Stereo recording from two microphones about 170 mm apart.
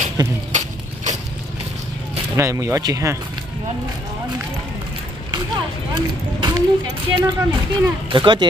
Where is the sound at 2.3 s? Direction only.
15° right (ahead or behind).